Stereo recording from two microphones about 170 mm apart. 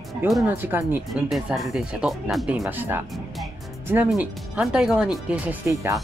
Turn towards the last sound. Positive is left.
turn(degrees=-15)  # may be behind; listen again after turning